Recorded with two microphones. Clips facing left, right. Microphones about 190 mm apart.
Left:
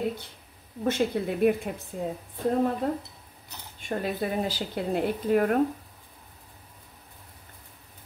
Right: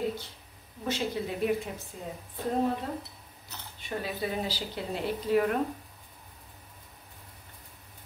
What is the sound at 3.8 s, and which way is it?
A woman's voice, 50° left (ahead or behind).